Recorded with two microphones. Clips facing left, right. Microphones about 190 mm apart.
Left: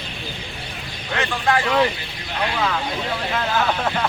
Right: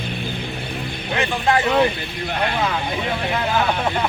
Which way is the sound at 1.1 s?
15° right (ahead or behind).